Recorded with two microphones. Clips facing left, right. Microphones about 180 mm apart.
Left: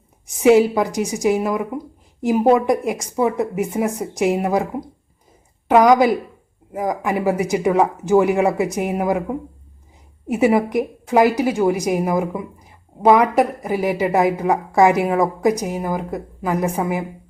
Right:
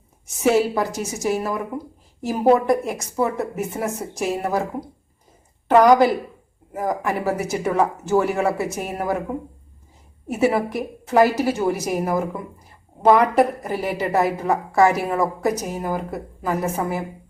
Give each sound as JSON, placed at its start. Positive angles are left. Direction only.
{"t": 0.4, "sound": "a woman's voice", "side_deg": 15}
{"t": 10.2, "sound": "a woman's voice", "side_deg": 15}